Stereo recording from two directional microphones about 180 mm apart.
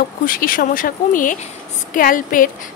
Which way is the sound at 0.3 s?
50° left (ahead or behind).